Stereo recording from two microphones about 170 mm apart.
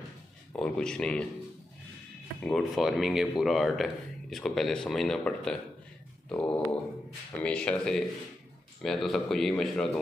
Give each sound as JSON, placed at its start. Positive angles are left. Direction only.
{"t": 0.5, "sound": "speech", "side_deg": 5}
{"t": 2.4, "sound": "speech", "side_deg": 0}